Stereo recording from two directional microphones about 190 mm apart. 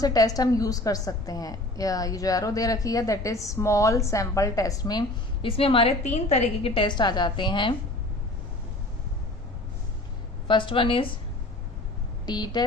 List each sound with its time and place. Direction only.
0.0 s a woman's voice: 20° left (ahead or behind)
10.5 s a woman's voice: 25° left (ahead or behind)
12.2 s speech: 20° left (ahead or behind)